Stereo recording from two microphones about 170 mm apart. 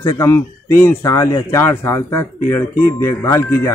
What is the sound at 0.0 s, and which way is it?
Speech, 15° left (ahead or behind).